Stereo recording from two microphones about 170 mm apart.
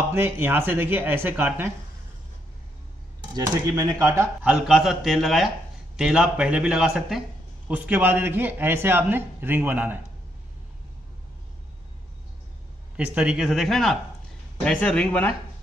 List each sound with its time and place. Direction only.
0.1 s speech: 15° right (ahead or behind)
3.3 s speech: 20° right (ahead or behind)
12.9 s speech: 5° right (ahead or behind); by 15.3 s 10° left (ahead or behind)